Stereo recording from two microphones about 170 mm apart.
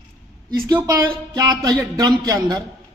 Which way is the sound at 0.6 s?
20° right (ahead or behind).